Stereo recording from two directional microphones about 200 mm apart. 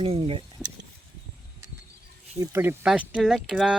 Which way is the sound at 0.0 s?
30° right (ahead or behind).